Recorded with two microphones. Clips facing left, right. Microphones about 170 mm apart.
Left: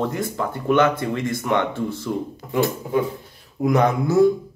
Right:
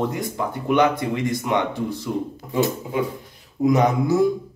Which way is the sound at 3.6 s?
20° right (ahead or behind).